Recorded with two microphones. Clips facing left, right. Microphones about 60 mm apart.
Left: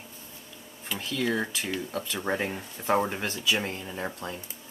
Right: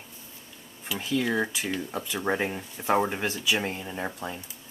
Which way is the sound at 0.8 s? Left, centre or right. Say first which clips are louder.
Right 2 dB; centre.